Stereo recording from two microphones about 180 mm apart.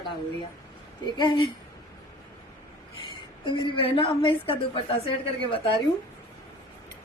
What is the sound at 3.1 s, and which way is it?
A woman's voice, 25° left (ahead or behind).